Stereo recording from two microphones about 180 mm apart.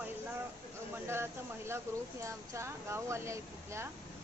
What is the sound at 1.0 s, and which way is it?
Speech, 15° right (ahead or behind).